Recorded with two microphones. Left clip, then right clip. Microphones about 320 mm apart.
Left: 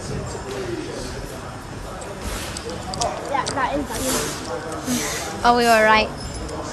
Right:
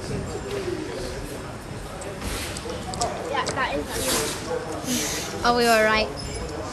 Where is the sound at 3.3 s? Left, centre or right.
Left.